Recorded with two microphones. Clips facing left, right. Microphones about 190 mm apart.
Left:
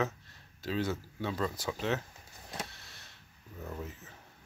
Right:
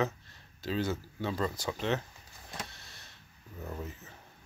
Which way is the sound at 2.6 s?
Centre (ahead or behind).